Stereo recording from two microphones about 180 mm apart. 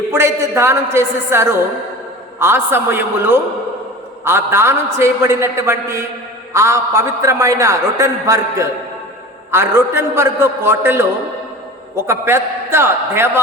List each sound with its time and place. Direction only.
0.1 s a man's voice: 15° right (ahead or behind)